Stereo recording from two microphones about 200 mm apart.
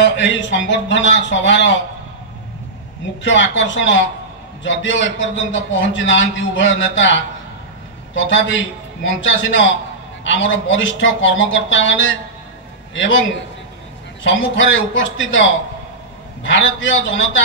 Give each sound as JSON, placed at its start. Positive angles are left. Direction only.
{"t": 0.0, "sound": "a man's voice", "side_deg": 65}
{"t": 3.2, "sound": "a man's voice", "side_deg": 65}
{"t": 14.2, "sound": "a man's voice", "side_deg": 70}